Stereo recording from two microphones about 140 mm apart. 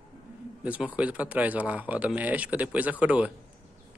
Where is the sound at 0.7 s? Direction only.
10° right (ahead or behind).